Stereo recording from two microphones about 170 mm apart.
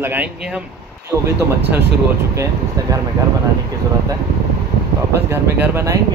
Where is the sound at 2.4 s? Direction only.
20° right (ahead or behind).